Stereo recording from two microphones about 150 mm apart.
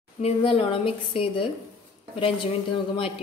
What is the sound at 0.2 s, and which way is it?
A woman's voice, 40° left (ahead or behind).